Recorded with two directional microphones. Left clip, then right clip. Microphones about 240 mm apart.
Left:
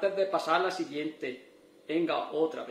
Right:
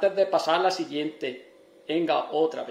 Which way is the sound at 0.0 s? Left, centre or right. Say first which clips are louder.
Right 6 dB; right.